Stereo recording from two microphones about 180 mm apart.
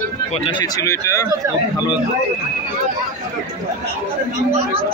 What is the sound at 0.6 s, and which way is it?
Speech, 15° left (ahead or behind).